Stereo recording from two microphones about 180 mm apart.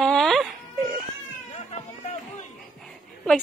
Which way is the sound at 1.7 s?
40° left (ahead or behind).